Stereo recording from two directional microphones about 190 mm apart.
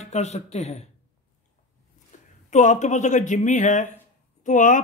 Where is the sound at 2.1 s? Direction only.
40° left (ahead or behind).